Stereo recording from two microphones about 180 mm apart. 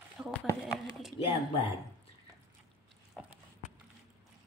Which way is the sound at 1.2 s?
30° left (ahead or behind).